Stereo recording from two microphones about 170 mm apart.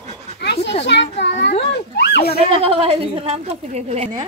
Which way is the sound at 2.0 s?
75° left (ahead or behind).